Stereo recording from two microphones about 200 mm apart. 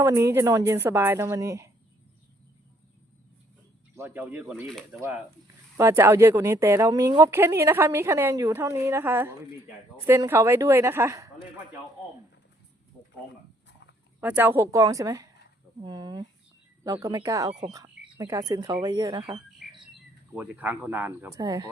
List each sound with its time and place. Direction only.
0.0 s a woman's voice: 15° right (ahead or behind)
3.9 s a woman's voice: 10° right (ahead or behind)
14.2 s a woman's voice: 10° right (ahead or behind)
20.3 s a woman's voice: 10° right (ahead or behind)